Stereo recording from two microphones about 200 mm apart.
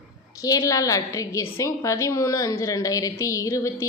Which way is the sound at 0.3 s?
15° left (ahead or behind).